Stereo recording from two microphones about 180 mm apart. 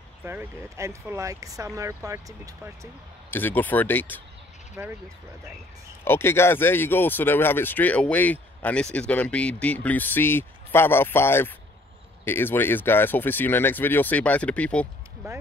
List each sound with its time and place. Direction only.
0.2 s speech: 10° right (ahead or behind)
3.3 s speech: 10° left (ahead or behind)
4.8 s speech: 15° right (ahead or behind)
6.0 s speech: 15° left (ahead or behind)
15.2 s speech: 15° right (ahead or behind)